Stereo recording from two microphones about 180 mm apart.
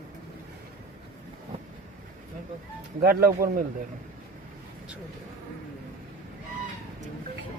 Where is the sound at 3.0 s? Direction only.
60° right (ahead or behind).